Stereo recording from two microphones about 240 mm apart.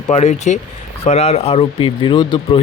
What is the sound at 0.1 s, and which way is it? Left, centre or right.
Speech, left.